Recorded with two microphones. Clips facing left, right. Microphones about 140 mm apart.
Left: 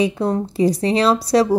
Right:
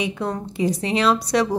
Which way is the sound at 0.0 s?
30° left (ahead or behind).